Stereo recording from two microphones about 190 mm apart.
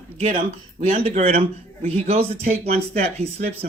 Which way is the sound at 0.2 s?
35° right (ahead or behind).